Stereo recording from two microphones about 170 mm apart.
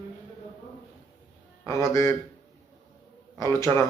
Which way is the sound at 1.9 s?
15° left (ahead or behind).